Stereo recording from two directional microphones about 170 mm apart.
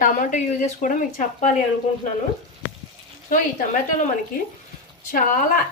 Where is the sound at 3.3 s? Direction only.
50° left (ahead or behind).